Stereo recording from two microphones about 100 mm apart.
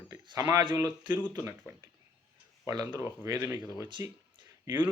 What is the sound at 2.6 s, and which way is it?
Speech, 35° right (ahead or behind).